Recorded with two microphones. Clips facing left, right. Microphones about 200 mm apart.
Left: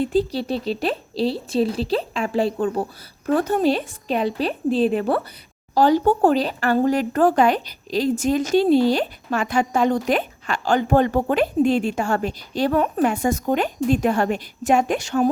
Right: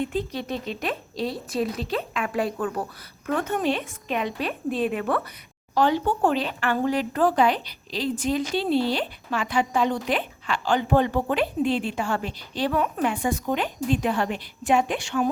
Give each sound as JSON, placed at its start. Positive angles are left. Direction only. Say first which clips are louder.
{"t": 0.0, "sound": "speech", "louder": "left 7 dB", "side_deg": 35}